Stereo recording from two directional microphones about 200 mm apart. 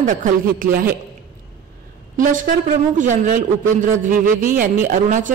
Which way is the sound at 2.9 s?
40° right (ahead or behind).